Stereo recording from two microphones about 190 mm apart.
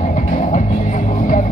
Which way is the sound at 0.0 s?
40° left (ahead or behind).